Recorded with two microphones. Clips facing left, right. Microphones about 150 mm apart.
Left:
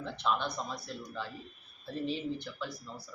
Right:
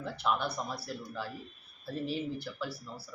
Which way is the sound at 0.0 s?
5° right (ahead or behind).